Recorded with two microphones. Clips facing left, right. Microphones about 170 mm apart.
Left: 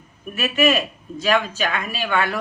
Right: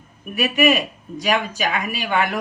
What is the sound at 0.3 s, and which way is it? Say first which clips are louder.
Speech: right 1 dB; 15° right (ahead or behind).